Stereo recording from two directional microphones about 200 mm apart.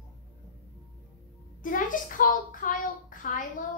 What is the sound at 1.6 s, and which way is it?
A child's voice, 40° left (ahead or behind).